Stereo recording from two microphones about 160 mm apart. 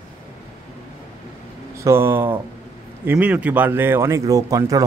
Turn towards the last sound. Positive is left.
turn(degrees=-20)  # may be behind; listen again after turning